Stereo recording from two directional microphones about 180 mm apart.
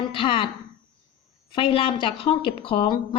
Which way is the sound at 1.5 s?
30° left (ahead or behind).